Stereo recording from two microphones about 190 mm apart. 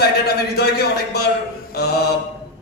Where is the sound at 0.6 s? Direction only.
55° left (ahead or behind).